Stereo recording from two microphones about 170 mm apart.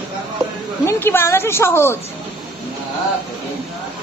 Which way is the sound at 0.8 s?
15° left (ahead or behind).